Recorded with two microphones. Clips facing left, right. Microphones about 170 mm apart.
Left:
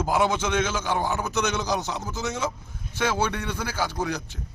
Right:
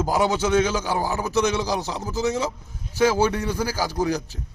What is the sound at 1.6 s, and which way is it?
A man's voice, 35° right (ahead or behind).